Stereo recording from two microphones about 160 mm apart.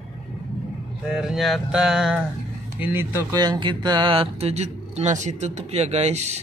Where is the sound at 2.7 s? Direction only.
15° right (ahead or behind).